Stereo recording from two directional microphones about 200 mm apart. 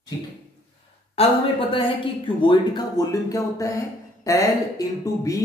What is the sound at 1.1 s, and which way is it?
Speech, 30° left (ahead or behind).